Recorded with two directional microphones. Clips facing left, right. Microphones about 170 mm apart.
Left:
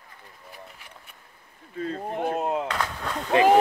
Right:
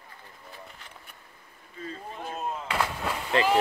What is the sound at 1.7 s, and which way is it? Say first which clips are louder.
Chop: left 9 dB; 65° left (ahead or behind).